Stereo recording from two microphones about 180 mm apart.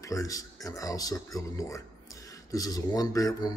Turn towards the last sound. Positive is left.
turn(degrees=20)  # may be behind; listen again after turning